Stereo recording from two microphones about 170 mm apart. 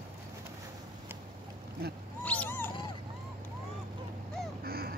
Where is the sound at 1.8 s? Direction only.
65° right (ahead or behind).